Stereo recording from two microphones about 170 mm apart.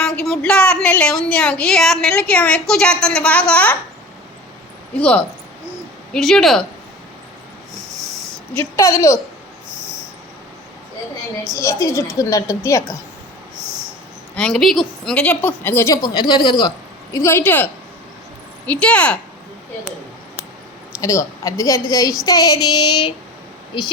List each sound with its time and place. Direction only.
0.0 s a woman's voice: 5° left (ahead or behind)
4.9 s a woman's voice: 5° left (ahead or behind)
8.5 s a woman's voice: 15° left (ahead or behind)
11.5 s a woman's voice: 20° left (ahead or behind)
14.3 s a woman's voice: 5° left (ahead or behind)
21.0 s a woman's voice: 20° left (ahead or behind)